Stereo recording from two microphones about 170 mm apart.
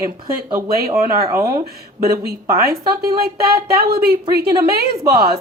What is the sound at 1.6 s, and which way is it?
A woman's voice, 65° right (ahead or behind).